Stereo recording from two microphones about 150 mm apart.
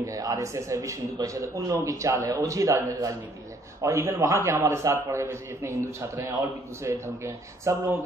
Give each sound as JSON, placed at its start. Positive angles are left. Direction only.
{"t": 0.0, "sound": "a man's voice", "side_deg": -25}